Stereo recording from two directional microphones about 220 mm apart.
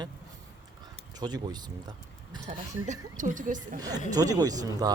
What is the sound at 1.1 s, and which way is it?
Speech, 20° right (ahead or behind).